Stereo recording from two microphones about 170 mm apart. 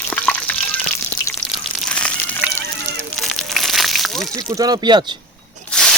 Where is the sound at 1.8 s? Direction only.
5° left (ahead or behind).